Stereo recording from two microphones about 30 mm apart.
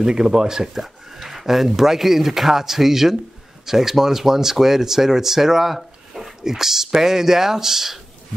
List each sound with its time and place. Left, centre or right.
0.0 s speech: right
0.7 s speech: centre